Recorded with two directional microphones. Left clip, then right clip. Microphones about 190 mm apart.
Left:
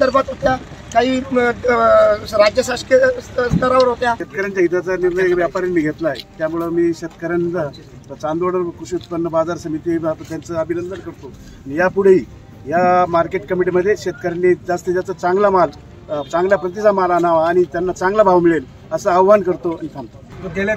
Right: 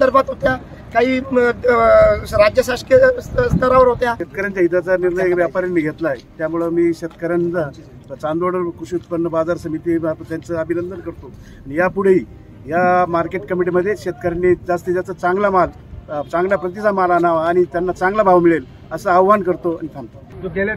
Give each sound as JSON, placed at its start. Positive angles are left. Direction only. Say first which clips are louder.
{"t": 0.0, "sound": "speech", "louder": "right 1 dB", "side_deg": -20}